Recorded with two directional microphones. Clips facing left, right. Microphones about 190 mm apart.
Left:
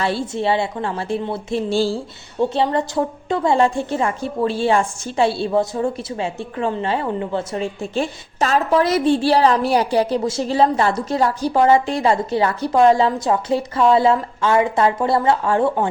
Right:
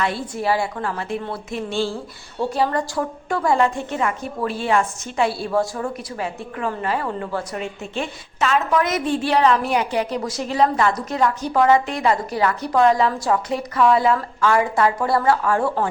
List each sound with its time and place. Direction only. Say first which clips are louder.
0.0 s a woman's voice: left 3 dB; 30° left (ahead or behind)
2.4 s a woman's voice: left 3 dB; 20° left (ahead or behind)